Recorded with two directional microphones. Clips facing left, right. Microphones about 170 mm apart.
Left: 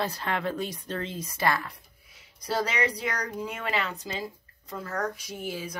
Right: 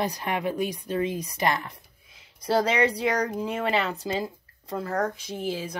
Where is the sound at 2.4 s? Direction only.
30° right (ahead or behind).